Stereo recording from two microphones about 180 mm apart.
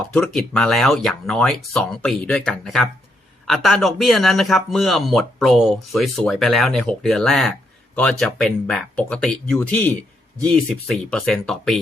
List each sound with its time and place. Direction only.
0.1 s speech: 5° left (ahead or behind)